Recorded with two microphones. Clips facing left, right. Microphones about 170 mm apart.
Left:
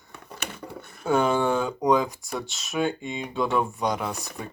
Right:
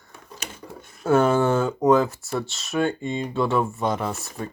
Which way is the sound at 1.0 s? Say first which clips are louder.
Right 4 dB; 5° right (ahead or behind).